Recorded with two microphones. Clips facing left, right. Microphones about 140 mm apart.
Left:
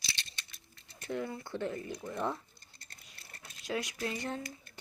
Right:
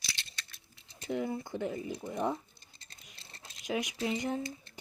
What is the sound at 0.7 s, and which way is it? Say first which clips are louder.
Speech: right 2 dB; 15° right (ahead or behind).